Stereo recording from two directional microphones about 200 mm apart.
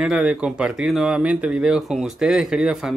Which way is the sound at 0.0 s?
5° right (ahead or behind).